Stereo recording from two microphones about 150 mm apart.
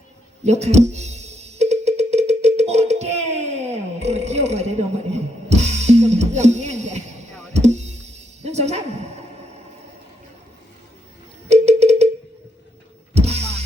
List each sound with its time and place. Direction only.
0.4 s music: 45° right (ahead or behind)
11.4 s cowbell: 45° right (ahead or behind)
13.1 s music: 45° right (ahead or behind)